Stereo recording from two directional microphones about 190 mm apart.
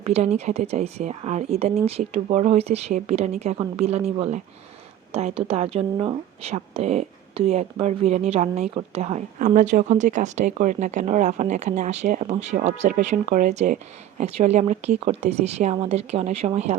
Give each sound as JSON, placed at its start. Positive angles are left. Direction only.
{"t": 0.0, "sound": "speech", "side_deg": -35}
{"t": 9.4, "sound": "speech", "side_deg": -45}